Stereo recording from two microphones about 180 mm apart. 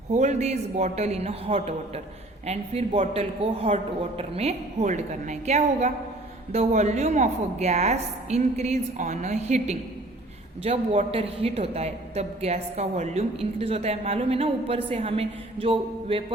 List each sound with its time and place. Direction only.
0.1 s a woman's voice: 40° right (ahead or behind)